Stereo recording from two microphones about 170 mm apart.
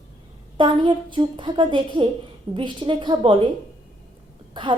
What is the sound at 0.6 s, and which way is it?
A woman's voice, 25° right (ahead or behind).